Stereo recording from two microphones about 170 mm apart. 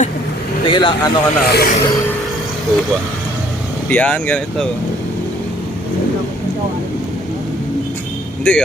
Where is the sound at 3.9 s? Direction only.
10° left (ahead or behind).